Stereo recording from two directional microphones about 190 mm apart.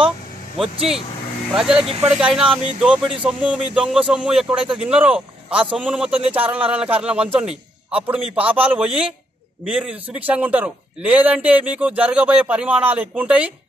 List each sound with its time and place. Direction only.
1.5 s a man's voice: centre (ahead or behind)
2.5 s speech: 30° right (ahead or behind)
2.8 s a man's voice: 5° right (ahead or behind)